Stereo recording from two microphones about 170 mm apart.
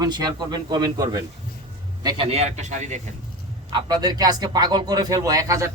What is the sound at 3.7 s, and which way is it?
Speech, 25° right (ahead or behind).